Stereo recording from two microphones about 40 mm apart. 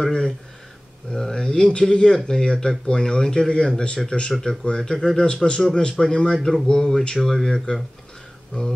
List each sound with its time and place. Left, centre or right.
0.0 s speech: centre
4.3 s speech: centre
7.7 s speech: left